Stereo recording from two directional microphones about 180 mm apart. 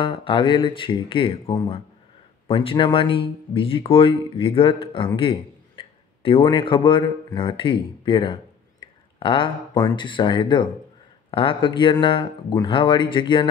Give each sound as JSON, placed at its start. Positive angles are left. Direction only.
{"t": 0.0, "sound": "speech", "side_deg": 25}